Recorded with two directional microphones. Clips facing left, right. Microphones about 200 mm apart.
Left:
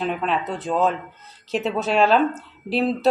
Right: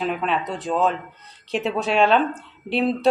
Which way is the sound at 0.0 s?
Centre (ahead or behind).